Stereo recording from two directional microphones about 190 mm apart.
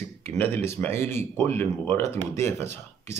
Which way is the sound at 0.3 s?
10° left (ahead or behind).